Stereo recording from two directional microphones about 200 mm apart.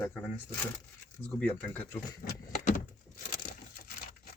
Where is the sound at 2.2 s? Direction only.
40° left (ahead or behind).